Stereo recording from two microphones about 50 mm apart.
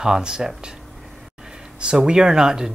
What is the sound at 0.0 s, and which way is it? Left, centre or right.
Speech, centre.